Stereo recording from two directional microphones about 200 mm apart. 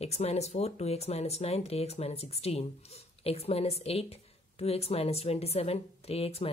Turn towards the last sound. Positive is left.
turn(degrees=30)  # may be behind; listen again after turning